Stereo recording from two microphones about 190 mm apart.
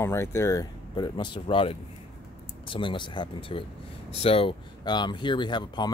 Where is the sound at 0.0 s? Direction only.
15° left (ahead or behind).